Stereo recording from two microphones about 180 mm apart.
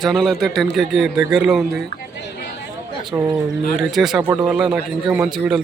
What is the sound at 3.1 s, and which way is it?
Speech, 10° right (ahead or behind).